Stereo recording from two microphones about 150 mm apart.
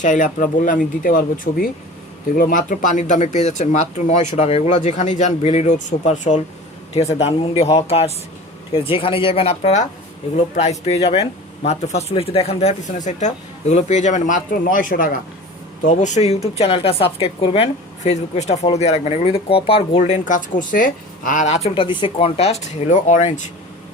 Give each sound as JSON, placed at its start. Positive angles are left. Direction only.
{"t": 0.0, "sound": "speech", "side_deg": 60}
{"t": 15.8, "sound": "speech", "side_deg": 55}
{"t": 20.0, "sound": "speech", "side_deg": 55}
{"t": 21.8, "sound": "speech", "side_deg": 35}